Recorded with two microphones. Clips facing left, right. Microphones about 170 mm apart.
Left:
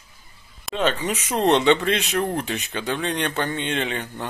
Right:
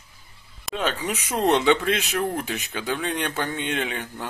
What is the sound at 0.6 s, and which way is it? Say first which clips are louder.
Speech: left 3 dB; 5° right (ahead or behind).